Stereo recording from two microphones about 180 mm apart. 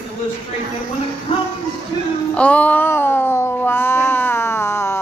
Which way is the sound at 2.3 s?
10° left (ahead or behind).